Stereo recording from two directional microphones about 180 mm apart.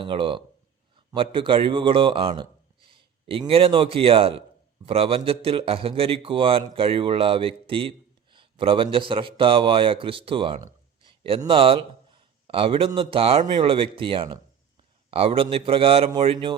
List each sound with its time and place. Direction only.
0.0 s a man's voice: 30° right (ahead or behind)